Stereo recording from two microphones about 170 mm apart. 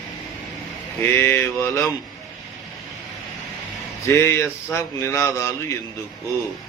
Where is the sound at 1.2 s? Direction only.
15° left (ahead or behind).